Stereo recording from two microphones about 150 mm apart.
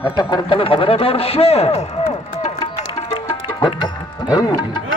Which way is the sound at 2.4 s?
45° left (ahead or behind).